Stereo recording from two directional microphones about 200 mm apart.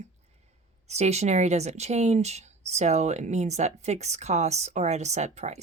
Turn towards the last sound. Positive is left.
turn(degrees=-35)  # may be behind; listen again after turning